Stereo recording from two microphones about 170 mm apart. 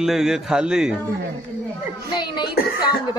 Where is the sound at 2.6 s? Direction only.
65° left (ahead or behind).